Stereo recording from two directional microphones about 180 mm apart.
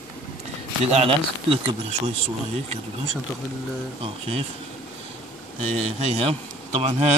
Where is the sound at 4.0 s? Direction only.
35° right (ahead or behind).